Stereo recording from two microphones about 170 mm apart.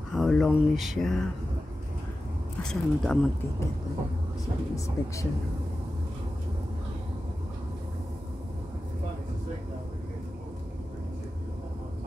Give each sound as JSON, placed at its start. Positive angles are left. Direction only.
{"t": 0.1, "sound": "speech", "side_deg": 0}
{"t": 2.6, "sound": "speech", "side_deg": 5}
{"t": 4.7, "sound": "speech", "side_deg": 20}